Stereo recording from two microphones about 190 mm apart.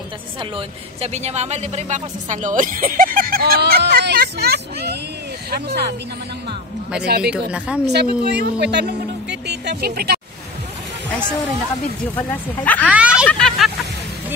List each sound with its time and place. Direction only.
0.4 s speech: 30° right (ahead or behind); by 5.9 s 55° right (ahead or behind)
7.1 s speech: 55° right (ahead or behind)
7.5 s a woman's voice: 5° right (ahead or behind)
7.8 s speech: 60° right (ahead or behind)
9.3 s a sound: 60° right (ahead or behind)
12.2 s speech: 10° left (ahead or behind)
12.8 s a sound: 5° right (ahead or behind)
13.3 s hubbub: 5° left (ahead or behind)